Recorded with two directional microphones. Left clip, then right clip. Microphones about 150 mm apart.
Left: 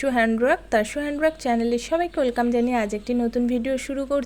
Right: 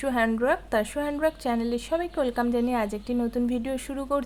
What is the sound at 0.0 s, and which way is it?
A woman's voice, 15° left (ahead or behind).